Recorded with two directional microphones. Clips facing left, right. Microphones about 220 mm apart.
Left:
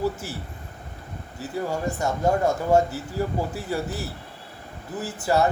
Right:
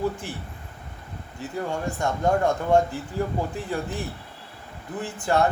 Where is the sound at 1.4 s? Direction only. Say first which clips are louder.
Left 1 dB; 5° left (ahead or behind).